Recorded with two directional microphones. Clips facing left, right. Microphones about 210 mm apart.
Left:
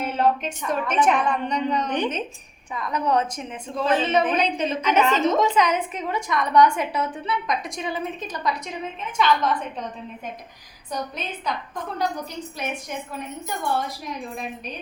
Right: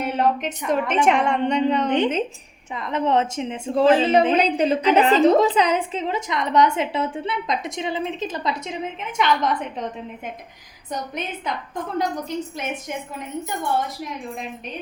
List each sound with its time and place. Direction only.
0.0 s a woman's voice: 15° right (ahead or behind)